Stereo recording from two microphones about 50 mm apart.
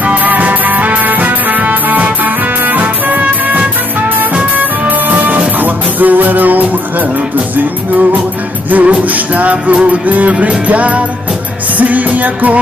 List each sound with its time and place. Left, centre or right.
0.0 s music: right